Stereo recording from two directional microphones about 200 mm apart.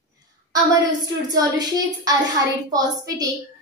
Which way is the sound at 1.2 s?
20° right (ahead or behind).